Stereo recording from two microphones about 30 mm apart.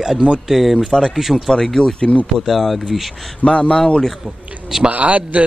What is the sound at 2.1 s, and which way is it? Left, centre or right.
Speech, left.